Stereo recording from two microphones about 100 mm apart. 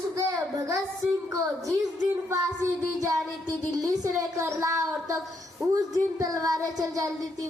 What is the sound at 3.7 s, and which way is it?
Speech, 35° right (ahead or behind).